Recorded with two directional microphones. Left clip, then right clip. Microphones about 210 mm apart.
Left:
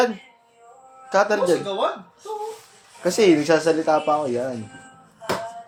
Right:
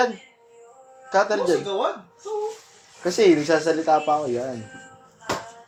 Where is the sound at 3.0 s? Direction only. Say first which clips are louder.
Left 1 dB; 20° left (ahead or behind).